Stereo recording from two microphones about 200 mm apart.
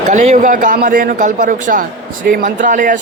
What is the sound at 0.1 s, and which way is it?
A man's voice, 35° right (ahead or behind).